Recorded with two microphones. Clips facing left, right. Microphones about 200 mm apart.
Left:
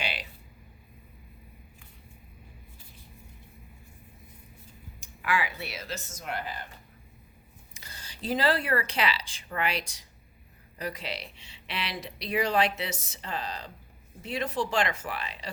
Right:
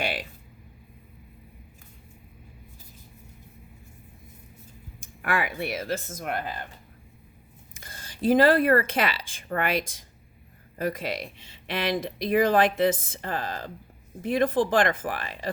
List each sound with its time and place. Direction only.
0.0 s a sound: 50° right (ahead or behind)
4.9 s speech: 50° right (ahead or behind)
7.7 s speech: 50° right (ahead or behind)